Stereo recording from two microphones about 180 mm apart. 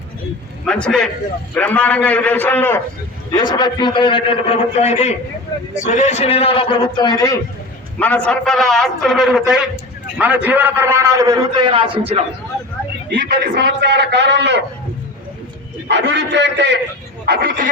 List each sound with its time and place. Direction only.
0.6 s a man's voice: 5° left (ahead or behind)
3.3 s a man's voice: 25° left (ahead or behind)
7.9 s a man's voice: 10° left (ahead or behind); by 12.2 s 30° right (ahead or behind)
13.1 s a man's voice: 55° right (ahead or behind)
15.9 s a man's voice: 75° right (ahead or behind)
17.2 s speech: 55° right (ahead or behind)